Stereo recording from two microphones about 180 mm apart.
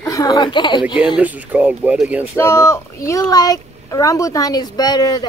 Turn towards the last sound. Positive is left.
turn(degrees=20)  # may be behind; listen again after turning